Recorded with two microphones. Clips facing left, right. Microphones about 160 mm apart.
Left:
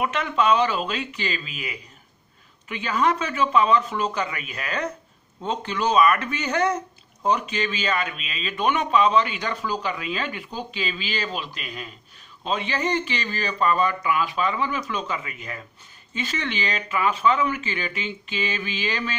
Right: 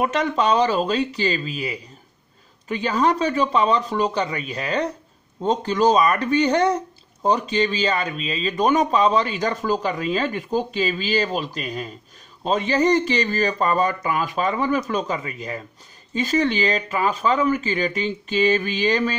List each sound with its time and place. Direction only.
0.0 s speech: 35° right (ahead or behind)